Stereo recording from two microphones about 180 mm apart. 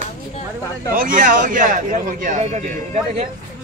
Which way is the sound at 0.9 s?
45° right (ahead or behind).